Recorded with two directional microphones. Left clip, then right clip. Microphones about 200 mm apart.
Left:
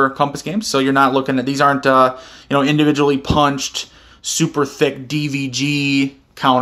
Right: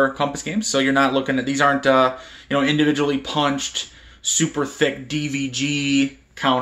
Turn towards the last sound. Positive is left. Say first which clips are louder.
# left 5 dB
turn(degrees=40)  # may be behind; listen again after turning